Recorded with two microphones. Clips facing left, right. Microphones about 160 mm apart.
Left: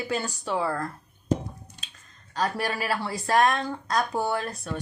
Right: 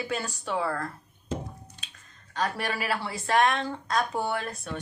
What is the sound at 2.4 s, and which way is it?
Speech, 40° left (ahead or behind).